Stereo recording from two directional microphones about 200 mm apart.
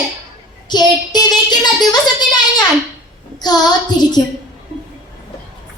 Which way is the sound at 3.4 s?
20° left (ahead or behind).